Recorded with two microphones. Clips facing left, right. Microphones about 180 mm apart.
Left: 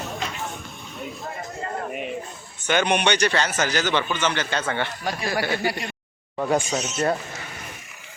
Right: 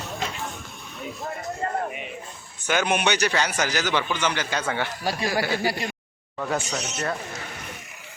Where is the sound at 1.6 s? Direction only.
50° right (ahead or behind).